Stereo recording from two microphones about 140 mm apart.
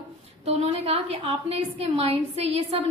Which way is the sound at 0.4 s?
50° right (ahead or behind).